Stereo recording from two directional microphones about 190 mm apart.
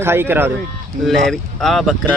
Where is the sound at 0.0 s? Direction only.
10° right (ahead or behind).